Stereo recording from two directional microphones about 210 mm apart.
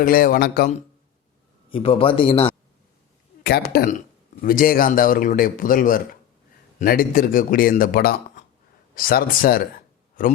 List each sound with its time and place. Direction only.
0.0 s speech: 40° left (ahead or behind)
1.7 s a man's voice: 25° left (ahead or behind)
3.4 s a man's voice: 50° left (ahead or behind)